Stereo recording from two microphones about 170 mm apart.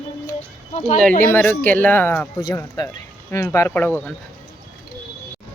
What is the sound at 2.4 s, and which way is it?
Speech, 25° left (ahead or behind).